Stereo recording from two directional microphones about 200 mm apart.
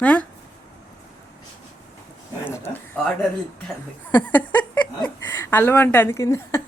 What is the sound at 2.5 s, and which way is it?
Speech, 10° left (ahead or behind).